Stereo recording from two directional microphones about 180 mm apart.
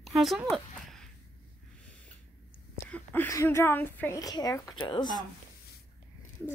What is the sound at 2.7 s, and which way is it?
A woman's voice, 10° left (ahead or behind).